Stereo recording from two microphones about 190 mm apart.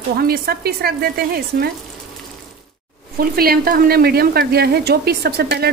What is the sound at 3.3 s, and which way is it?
Speech, 50° right (ahead or behind).